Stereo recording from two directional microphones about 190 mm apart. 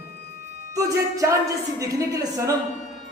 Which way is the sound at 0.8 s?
15° right (ahead or behind).